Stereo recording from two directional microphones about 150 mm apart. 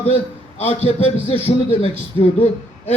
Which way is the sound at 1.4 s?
45° left (ahead or behind).